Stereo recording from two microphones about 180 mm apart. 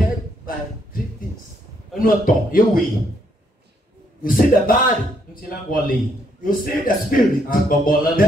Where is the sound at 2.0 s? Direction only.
50° left (ahead or behind).